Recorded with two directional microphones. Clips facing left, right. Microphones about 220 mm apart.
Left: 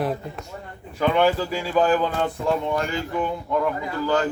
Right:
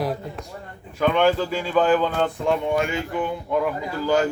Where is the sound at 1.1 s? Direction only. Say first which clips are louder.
Even; 10° left (ahead or behind).